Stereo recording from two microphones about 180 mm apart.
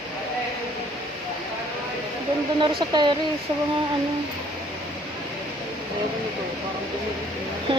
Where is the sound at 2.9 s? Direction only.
25° right (ahead or behind).